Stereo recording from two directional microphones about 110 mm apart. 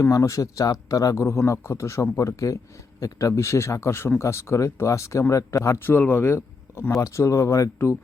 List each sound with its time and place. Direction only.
0.0 s speech: 30° left (ahead or behind)